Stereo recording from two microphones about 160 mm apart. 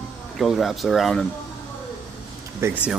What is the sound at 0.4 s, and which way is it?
Speech, centre (ahead or behind).